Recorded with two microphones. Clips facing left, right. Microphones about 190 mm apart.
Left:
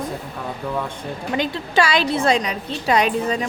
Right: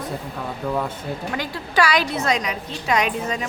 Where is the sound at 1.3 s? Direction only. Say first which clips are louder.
Left 5 dB; 20° left (ahead or behind).